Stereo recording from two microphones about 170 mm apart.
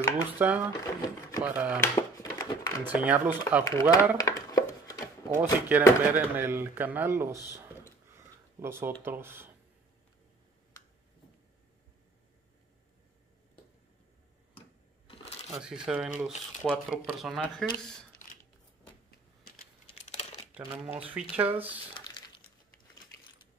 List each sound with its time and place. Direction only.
0.4 s speech: 10° right (ahead or behind)
0.8 s speech: 20° left (ahead or behind)
1.7 s a sound: 20° left (ahead or behind)
2.9 s speech: 10° right (ahead or behind)
4.2 s a sound: 20° left (ahead or behind)
5.3 s speech: 10° right (ahead or behind)
15.0 s a sound: 35° left (ahead or behind)
15.5 s speech: 5° right (ahead or behind)
20.0 s crumpling: 45° left (ahead or behind)
20.5 s speech: 10° right (ahead or behind)